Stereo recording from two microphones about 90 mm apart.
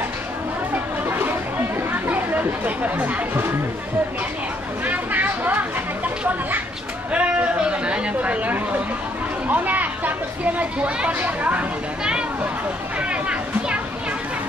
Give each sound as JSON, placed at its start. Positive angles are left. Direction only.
{"t": 1.0, "sound": "chatter", "side_deg": -25}
{"t": 4.8, "sound": "chatter", "side_deg": -20}
{"t": 7.1, "sound": "a sound", "side_deg": -15}
{"t": 13.1, "sound": "children playing", "side_deg": -10}